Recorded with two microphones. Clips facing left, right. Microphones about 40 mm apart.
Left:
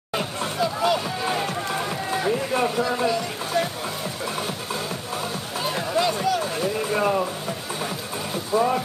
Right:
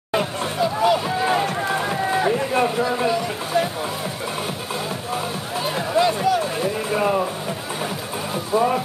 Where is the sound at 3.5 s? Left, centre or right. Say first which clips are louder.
Right 3 dB; right.